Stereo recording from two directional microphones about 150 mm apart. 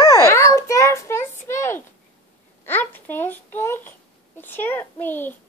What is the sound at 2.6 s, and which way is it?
Babbling, 15° left (ahead or behind).